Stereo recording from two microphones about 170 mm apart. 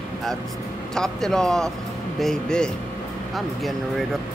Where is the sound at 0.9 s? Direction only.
5° left (ahead or behind).